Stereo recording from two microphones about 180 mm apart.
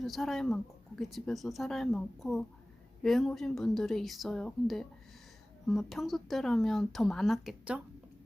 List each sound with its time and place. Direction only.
0.0 s speech: centre (ahead or behind)